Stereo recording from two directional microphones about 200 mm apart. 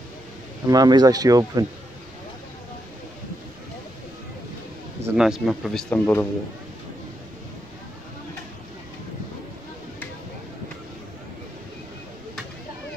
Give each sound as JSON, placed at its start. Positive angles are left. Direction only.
{"t": 0.7, "sound": "speech", "side_deg": -20}
{"t": 5.0, "sound": "speech", "side_deg": -5}
{"t": 5.9, "sound": "speech", "side_deg": 10}